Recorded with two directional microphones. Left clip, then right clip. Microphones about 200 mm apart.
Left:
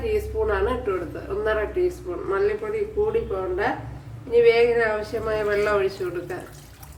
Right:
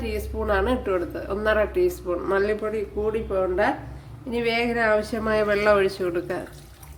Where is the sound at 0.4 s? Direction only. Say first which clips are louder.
Right 4 dB; 50° right (ahead or behind).